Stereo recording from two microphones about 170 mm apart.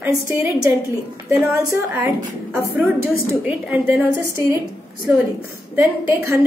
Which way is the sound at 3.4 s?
10° right (ahead or behind).